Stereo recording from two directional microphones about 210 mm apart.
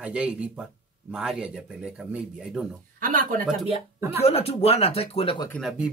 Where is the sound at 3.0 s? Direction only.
40° right (ahead or behind).